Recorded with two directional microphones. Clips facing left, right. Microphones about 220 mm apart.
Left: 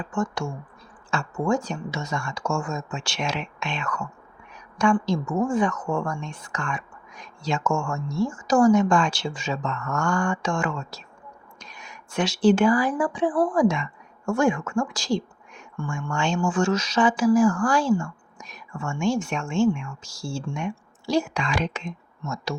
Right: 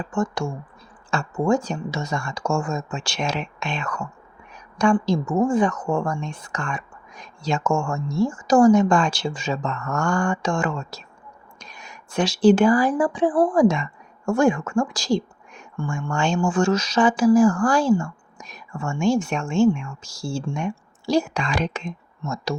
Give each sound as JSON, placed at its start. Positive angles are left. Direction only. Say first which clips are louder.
{"t": 1.1, "sound": "speech", "louder": "right 3 dB", "side_deg": -35}